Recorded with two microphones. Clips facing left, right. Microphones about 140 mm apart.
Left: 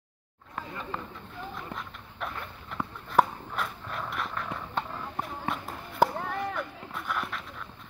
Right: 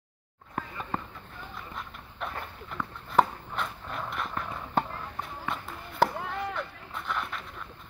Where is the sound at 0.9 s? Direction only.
45° right (ahead or behind).